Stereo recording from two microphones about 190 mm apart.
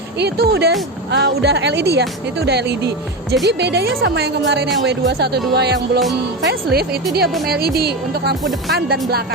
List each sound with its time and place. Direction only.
0.2 s speech: 55° right (ahead or behind)